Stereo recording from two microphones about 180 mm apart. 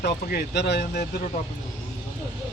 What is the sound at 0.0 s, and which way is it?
Speech, 60° left (ahead or behind).